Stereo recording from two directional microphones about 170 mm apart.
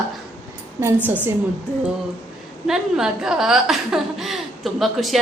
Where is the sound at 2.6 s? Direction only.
5° right (ahead or behind).